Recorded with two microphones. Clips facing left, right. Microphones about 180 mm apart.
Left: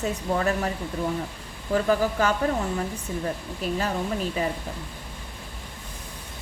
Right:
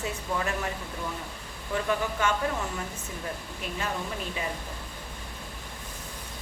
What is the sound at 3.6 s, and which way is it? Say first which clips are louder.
Speech: left 9 dB; 40° left (ahead or behind).